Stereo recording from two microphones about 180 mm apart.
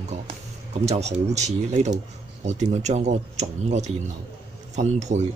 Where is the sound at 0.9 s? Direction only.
35° right (ahead or behind).